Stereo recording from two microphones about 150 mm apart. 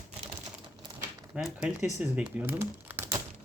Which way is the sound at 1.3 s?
5° right (ahead or behind).